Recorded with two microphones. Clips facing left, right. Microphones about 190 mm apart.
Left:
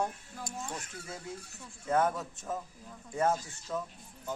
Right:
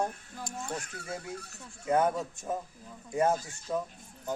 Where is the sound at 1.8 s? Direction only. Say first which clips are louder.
Right 2 dB; 15° right (ahead or behind).